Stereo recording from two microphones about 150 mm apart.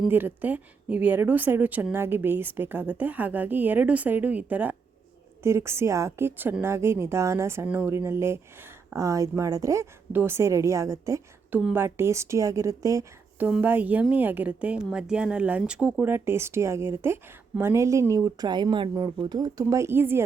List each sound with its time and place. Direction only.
0.1 s a woman's voice: 15° right (ahead or behind)